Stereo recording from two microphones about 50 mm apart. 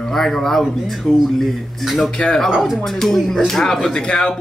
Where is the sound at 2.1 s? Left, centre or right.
Centre.